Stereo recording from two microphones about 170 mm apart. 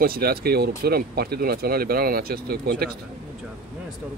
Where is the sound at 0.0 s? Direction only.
65° right (ahead or behind).